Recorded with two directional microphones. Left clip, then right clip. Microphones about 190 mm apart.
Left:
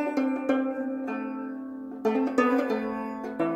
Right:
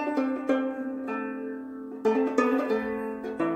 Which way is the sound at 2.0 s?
45° left (ahead or behind).